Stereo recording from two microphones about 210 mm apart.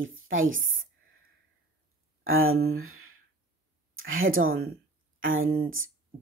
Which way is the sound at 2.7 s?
80° right.